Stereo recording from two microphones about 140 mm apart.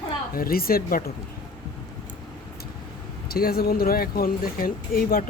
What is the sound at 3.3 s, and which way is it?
Speech, 90° left.